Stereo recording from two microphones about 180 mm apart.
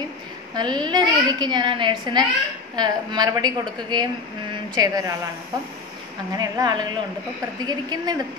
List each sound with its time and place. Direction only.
0.6 s a woman's voice: 25° right (ahead or behind)
6.3 s a woman's voice: 20° right (ahead or behind)